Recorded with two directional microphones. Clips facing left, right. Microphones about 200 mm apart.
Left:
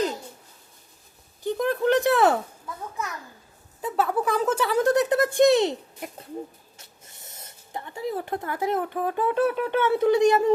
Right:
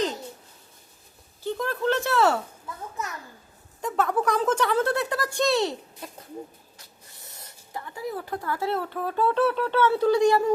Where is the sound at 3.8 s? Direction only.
5° left (ahead or behind).